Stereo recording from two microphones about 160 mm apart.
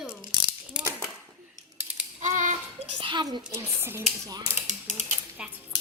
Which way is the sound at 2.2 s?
50° right (ahead or behind).